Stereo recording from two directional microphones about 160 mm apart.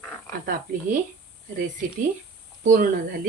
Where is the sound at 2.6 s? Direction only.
55° right (ahead or behind).